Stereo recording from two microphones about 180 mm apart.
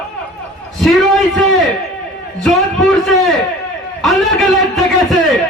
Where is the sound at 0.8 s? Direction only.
Centre (ahead or behind).